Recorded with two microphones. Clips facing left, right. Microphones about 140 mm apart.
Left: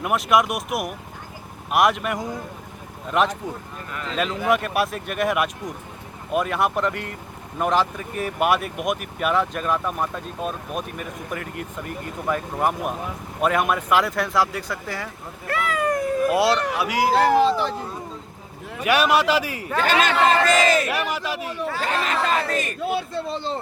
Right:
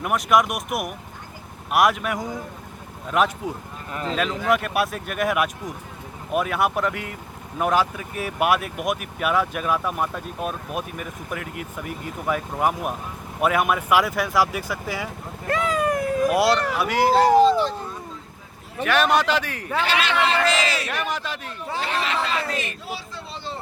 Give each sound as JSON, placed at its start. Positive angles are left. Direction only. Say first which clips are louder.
{"t": 0.0, "sound": "speech", "louder": "even", "side_deg": 0}
{"t": 16.3, "sound": "a man's voice", "louder": "even", "side_deg": 0}
{"t": 18.8, "sound": "a man's voice", "louder": "left 1 dB", "side_deg": 10}
{"t": 19.8, "sound": "a man's voice", "louder": "left 4 dB", "side_deg": 45}
{"t": 21.1, "sound": "a sound", "louder": "left 2 dB", "side_deg": 5}
{"t": 21.8, "sound": "a sound", "louder": "even", "side_deg": 45}